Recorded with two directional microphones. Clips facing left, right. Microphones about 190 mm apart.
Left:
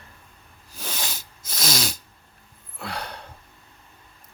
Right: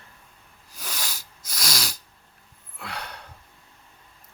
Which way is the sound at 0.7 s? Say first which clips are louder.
Left 3 dB; 25° left (ahead or behind).